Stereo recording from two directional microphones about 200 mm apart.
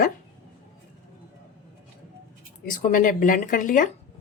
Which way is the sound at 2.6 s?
40° left (ahead or behind).